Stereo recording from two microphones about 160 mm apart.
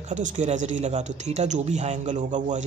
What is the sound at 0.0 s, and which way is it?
A man's voice, 50° right (ahead or behind).